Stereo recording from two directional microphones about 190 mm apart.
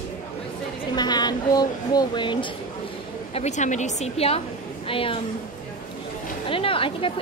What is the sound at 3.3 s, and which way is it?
A woman's voice, 35° left (ahead or behind).